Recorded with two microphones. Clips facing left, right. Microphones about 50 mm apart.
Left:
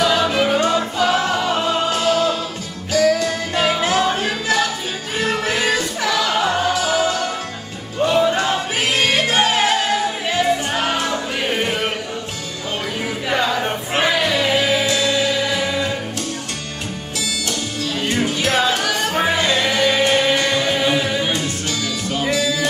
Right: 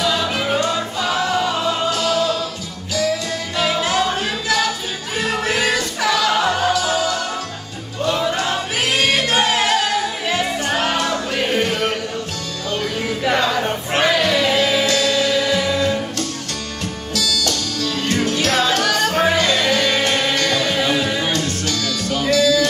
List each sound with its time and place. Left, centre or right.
0.0 s music: centre
1.9 s music: left
3.6 s music: left
5.3 s music: centre
6.7 s music: left
11.3 s music: centre
11.6 s chant: centre
13.3 s music: centre
21.3 s music: left